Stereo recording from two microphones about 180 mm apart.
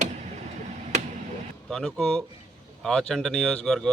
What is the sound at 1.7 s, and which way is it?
Speech, centre (ahead or behind).